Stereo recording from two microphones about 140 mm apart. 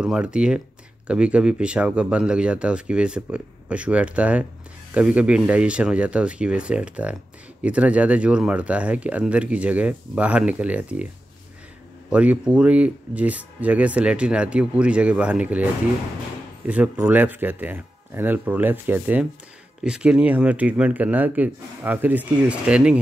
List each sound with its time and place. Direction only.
0.0 s speech: 5° right (ahead or behind)
12.1 s speech: 10° right (ahead or behind)